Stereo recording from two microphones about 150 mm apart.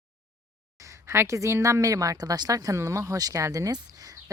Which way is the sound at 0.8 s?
20° right (ahead or behind).